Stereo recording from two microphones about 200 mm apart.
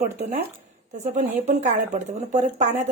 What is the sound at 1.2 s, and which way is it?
Speech, 35° right (ahead or behind).